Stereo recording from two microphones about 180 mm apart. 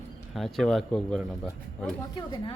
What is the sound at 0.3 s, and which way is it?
A man's voice, centre (ahead or behind).